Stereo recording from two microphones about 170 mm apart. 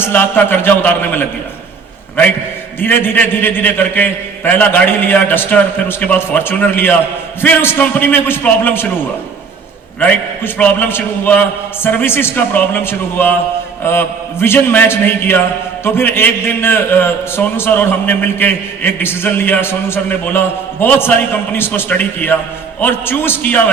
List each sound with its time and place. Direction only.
0.0 s a man's voice: 10° left (ahead or behind)
2.8 s a man's voice: 10° left (ahead or behind)
10.0 s a man's voice: 10° left (ahead or behind)